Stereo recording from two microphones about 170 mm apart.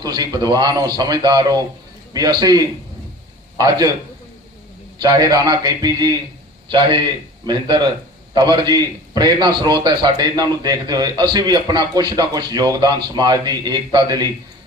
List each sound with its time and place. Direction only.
0.0 s a man's voice: 25° right (ahead or behind)
4.9 s a man's voice: 20° right (ahead or behind)